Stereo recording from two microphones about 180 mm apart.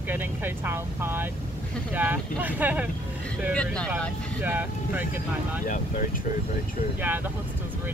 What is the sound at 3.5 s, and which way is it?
Speech, 5° left (ahead or behind).